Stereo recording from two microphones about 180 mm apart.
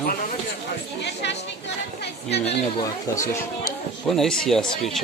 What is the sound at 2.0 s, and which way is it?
Speech, 65° left (ahead or behind).